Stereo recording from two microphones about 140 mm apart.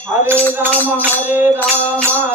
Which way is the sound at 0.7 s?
10° left (ahead or behind).